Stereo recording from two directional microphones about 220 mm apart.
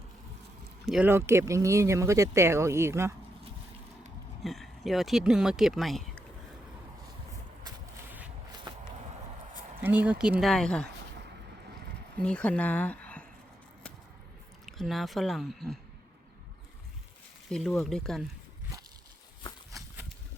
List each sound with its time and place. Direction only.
0.9 s speech: 5° right (ahead or behind)
4.4 s speech: centre (ahead or behind)
8.7 s a sound: 20° right (ahead or behind)
9.8 s speech: 5° right (ahead or behind)
12.2 s speech: 5° left (ahead or behind)
14.7 s speech: centre (ahead or behind)
17.5 s speech: centre (ahead or behind)